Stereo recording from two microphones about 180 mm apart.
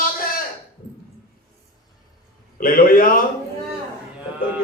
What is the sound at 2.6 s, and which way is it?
Speech, 50° left (ahead or behind).